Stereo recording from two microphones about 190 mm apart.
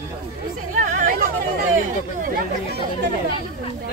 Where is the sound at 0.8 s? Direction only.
45° right (ahead or behind).